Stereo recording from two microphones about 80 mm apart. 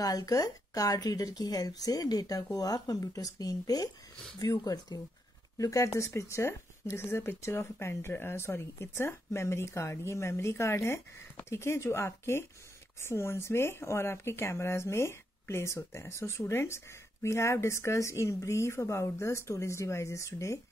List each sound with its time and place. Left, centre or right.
0.0 s a woman's voice: left